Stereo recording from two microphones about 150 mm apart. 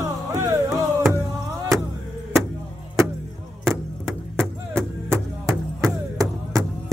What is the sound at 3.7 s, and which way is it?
Chop, 20° right (ahead or behind).